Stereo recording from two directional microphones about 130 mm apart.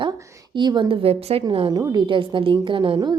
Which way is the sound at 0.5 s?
35° right (ahead or behind).